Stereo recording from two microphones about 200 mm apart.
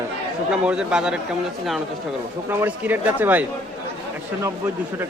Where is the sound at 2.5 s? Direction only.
10° right (ahead or behind).